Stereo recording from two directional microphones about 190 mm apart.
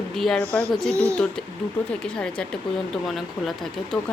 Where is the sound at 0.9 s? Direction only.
15° right (ahead or behind).